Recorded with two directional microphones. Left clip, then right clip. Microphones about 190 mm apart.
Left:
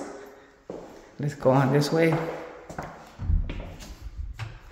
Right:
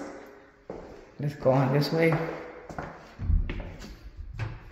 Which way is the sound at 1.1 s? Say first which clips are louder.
Left 2 dB; 15° left (ahead or behind).